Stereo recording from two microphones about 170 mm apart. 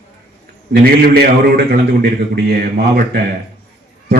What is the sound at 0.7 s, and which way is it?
A man's voice, 65° right (ahead or behind).